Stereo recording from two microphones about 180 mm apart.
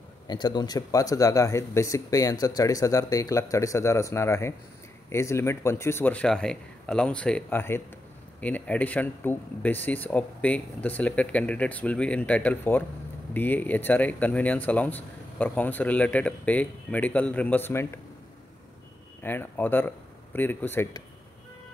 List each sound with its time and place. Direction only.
0.3 s speech: 25° left (ahead or behind)
19.2 s speech: 10° left (ahead or behind)